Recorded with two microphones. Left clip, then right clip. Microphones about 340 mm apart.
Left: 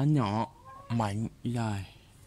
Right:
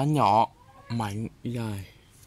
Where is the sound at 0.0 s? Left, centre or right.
Centre.